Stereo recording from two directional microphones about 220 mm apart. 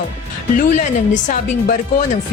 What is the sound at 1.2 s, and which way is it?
Speech, 35° left (ahead or behind).